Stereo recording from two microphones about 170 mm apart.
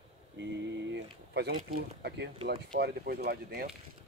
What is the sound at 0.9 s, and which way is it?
Speech, 75° right (ahead or behind).